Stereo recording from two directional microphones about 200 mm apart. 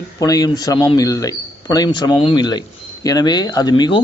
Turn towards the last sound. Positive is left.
turn(degrees=20)  # may be behind; listen again after turning